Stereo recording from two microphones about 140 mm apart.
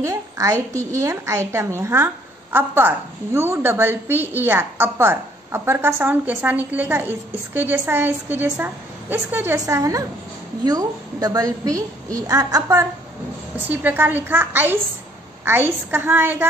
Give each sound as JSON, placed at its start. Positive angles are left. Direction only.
{"t": 0.0, "sound": "a child's voice", "side_deg": -25}
{"t": 13.7, "sound": "a woman's voice", "side_deg": -15}